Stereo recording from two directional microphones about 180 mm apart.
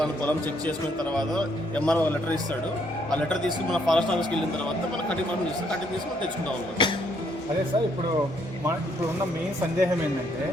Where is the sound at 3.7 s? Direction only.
5° left (ahead or behind).